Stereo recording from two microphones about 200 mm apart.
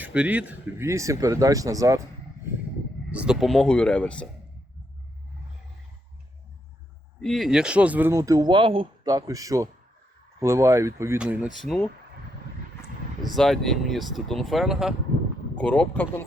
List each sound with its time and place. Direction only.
0.0 s speech: 5° right (ahead or behind)
3.1 s speech: 5° right (ahead or behind)
7.2 s speech: centre (ahead or behind)
13.3 s speech: centre (ahead or behind)